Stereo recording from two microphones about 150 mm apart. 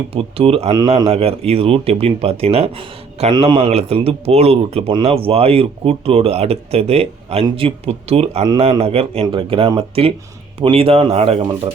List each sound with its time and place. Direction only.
0.1 s speech: 40° right (ahead or behind)
0.7 s speech: 25° right (ahead or behind)
1.1 s speech: 40° right (ahead or behind)
3.3 s speech: 30° right (ahead or behind)
3.7 s speech: 45° right (ahead or behind)
8.4 s speech: 30° right (ahead or behind)